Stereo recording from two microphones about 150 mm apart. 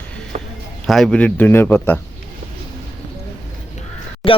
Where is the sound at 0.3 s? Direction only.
50° right (ahead or behind).